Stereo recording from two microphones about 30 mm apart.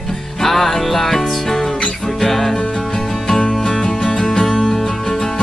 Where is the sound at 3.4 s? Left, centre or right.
Left.